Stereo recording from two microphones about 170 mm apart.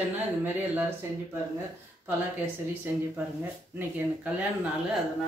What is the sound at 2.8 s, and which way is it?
Speech, 10° right (ahead or behind).